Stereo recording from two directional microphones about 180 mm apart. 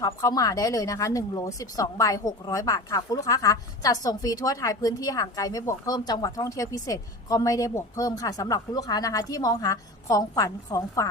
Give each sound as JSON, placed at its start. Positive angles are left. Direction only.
{"t": 0.0, "sound": "speech", "side_deg": 20}